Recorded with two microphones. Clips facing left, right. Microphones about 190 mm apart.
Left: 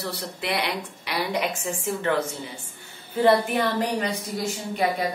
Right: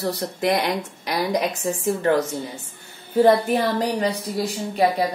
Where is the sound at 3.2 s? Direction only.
35° right (ahead or behind).